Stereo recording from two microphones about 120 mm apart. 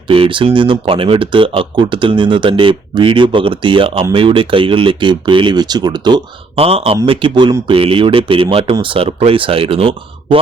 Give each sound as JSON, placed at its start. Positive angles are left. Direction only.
{"t": 0.1, "sound": "speech", "side_deg": -45}
{"t": 6.6, "sound": "speech", "side_deg": -55}